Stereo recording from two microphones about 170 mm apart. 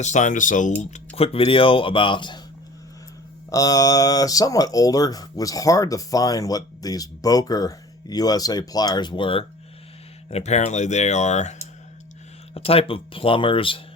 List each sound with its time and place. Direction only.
0.0 s speech: 45° left (ahead or behind); by 2.4 s 30° left (ahead or behind)
3.5 s speech: 20° left (ahead or behind); by 11.5 s 40° left (ahead or behind)
12.5 s speech: 35° left (ahead or behind)